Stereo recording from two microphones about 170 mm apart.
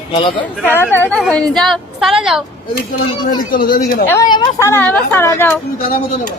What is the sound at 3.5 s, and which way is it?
Speech, 55° left (ahead or behind).